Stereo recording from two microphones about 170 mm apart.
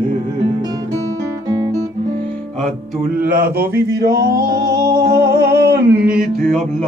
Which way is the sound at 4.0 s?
75° right (ahead or behind).